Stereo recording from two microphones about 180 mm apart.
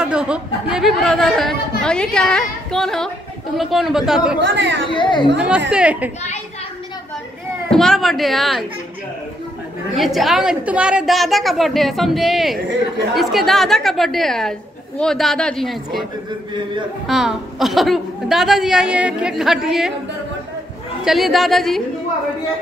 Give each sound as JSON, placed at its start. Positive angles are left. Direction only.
{"t": 0.0, "sound": "a woman's voice", "side_deg": -5}
{"t": 4.6, "sound": "speech", "side_deg": -85}
{"t": 4.9, "sound": "speech", "side_deg": 25}
{"t": 5.7, "sound": "speech", "side_deg": -5}
{"t": 7.7, "sound": "a woman's voice", "side_deg": 0}
{"t": 9.9, "sound": "a woman's voice", "side_deg": 0}
{"t": 17.1, "sound": "a woman's voice", "side_deg": 0}
{"t": 21.0, "sound": "a woman's voice", "side_deg": 0}